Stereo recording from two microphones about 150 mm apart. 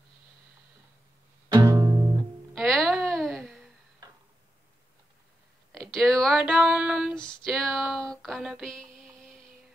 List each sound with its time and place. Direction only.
1.5 s music: 25° right (ahead or behind)
2.5 s a sound: centre (ahead or behind)
5.7 s female singing: centre (ahead or behind)
7.2 s music: 5° left (ahead or behind)